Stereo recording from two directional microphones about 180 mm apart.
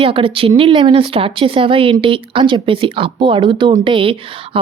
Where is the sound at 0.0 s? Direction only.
30° right (ahead or behind).